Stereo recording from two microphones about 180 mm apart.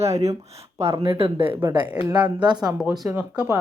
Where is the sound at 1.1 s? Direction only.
30° right (ahead or behind).